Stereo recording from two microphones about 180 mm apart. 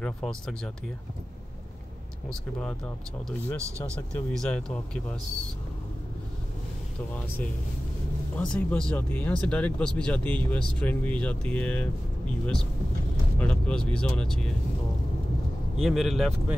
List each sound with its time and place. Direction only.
0.0 s speech: 5° left (ahead or behind)
3.6 s speech: 15° right (ahead or behind)
4.1 s speech: 5° left (ahead or behind)
8.4 s speech: 5° left (ahead or behind)
13.4 s speech: 5° left (ahead or behind)
15.8 s speech: centre (ahead or behind)